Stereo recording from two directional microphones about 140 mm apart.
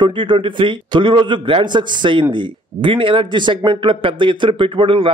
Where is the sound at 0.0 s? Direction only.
35° right (ahead or behind).